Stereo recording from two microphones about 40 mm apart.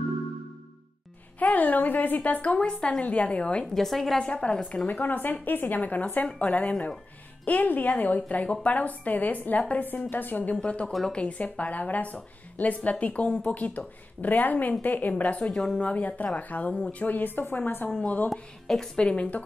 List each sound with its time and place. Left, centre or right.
1.4 s speech: left
2.5 s speech: left
3.0 s speech: left
3.6 s a woman's voice: centre
4.3 s speech: left
4.8 s speech: left
10.5 s speech: left
17.1 s speech: left
18.0 s speech: left
18.3 s a woman's voice: centre
18.9 s speech: left